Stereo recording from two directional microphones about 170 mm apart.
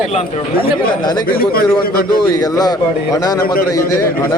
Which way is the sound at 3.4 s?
60° left (ahead or behind).